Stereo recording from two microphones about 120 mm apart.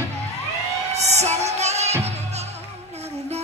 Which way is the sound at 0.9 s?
65° right (ahead or behind).